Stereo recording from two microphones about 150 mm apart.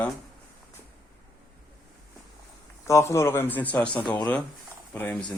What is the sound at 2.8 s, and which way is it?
Speech, 20° left (ahead or behind).